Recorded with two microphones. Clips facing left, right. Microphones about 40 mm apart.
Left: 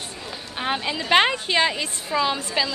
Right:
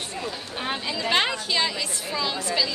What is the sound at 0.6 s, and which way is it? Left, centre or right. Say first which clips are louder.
A woman's voice: left 3 dB; left.